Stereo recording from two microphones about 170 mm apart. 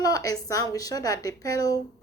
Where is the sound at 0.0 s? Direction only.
20° left (ahead or behind).